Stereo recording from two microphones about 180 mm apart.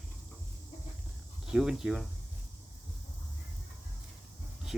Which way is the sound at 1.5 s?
5° right (ahead or behind).